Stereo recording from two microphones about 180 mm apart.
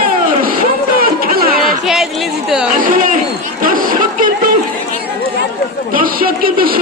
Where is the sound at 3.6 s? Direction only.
50° right (ahead or behind).